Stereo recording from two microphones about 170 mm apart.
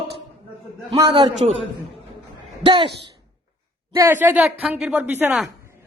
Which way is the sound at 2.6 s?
30° right (ahead or behind).